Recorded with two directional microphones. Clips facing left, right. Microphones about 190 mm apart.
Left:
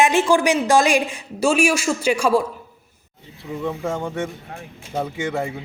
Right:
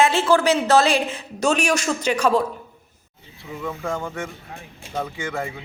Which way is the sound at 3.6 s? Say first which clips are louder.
Left 2 dB; 25° left (ahead or behind).